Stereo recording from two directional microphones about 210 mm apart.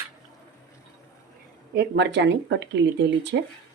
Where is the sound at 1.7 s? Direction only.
55° right (ahead or behind).